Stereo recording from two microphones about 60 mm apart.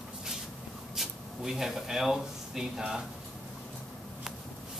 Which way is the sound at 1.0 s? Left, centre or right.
Centre.